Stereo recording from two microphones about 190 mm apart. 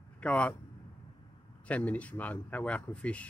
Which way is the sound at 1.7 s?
5° left (ahead or behind).